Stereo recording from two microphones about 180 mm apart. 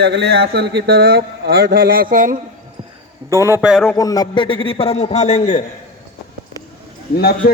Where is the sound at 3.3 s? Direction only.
15° right (ahead or behind).